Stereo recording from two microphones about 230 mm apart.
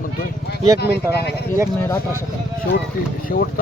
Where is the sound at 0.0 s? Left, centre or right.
Left.